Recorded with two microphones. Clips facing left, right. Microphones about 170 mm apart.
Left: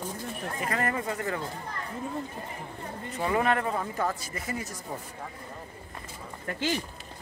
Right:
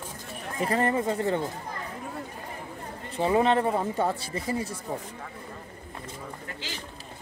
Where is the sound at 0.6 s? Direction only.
30° right (ahead or behind).